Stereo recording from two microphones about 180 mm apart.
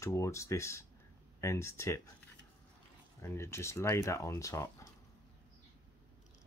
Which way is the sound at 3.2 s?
15° left (ahead or behind).